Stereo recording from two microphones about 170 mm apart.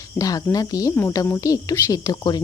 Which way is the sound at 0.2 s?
20° left (ahead or behind).